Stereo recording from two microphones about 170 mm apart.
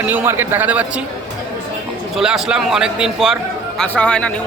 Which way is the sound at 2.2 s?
5° right (ahead or behind).